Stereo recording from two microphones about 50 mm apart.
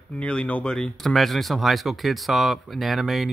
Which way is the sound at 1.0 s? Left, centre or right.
Centre.